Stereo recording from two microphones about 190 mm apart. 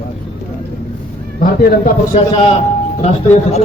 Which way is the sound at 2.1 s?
30° left (ahead or behind).